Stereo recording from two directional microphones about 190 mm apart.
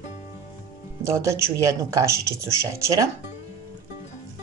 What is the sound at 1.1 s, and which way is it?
Speech, 15° right (ahead or behind).